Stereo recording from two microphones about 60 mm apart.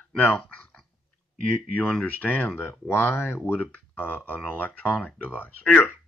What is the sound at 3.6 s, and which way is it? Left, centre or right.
Speech, left.